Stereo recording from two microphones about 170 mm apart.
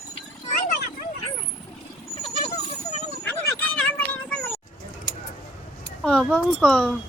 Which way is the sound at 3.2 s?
10° left (ahead or behind).